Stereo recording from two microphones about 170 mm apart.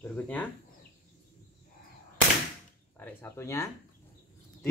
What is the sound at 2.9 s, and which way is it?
Speech, 15° left (ahead or behind).